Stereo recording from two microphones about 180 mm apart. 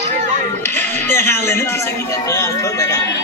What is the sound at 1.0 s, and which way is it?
Music, 10° left (ahead or behind).